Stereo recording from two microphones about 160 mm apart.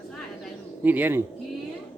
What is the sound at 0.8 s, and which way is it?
Speech, 10° right (ahead or behind).